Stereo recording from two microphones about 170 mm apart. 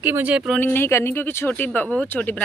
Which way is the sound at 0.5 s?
10° left (ahead or behind).